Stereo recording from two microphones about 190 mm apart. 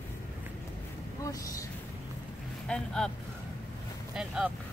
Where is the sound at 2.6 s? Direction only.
5° left (ahead or behind).